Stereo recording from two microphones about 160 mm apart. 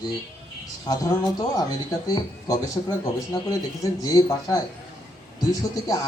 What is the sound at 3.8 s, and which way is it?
A man's voice, 20° left (ahead or behind).